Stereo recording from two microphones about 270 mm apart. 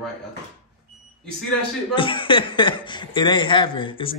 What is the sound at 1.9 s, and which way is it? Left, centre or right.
Speech, centre.